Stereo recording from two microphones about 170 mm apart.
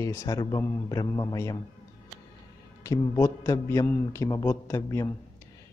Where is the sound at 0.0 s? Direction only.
20° left (ahead or behind).